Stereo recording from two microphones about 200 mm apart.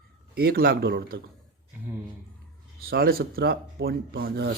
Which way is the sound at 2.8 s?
50° right (ahead or behind).